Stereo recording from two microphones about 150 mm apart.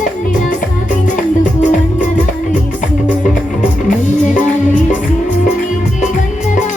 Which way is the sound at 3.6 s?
60° left (ahead or behind).